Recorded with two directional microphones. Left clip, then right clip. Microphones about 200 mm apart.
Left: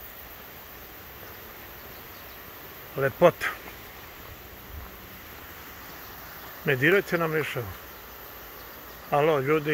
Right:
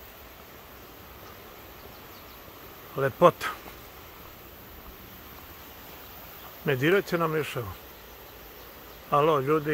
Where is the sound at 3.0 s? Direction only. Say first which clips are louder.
Even; 20° right (ahead or behind).